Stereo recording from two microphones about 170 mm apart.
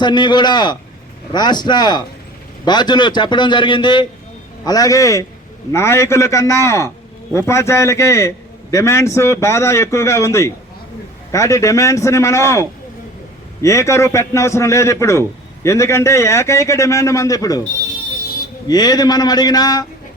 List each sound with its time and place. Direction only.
0.0 s a man's voice: 25° left (ahead or behind)
18.7 s speech: 25° left (ahead or behind)